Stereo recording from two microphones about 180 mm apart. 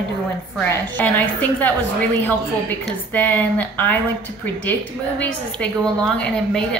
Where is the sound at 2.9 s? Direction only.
10° left (ahead or behind).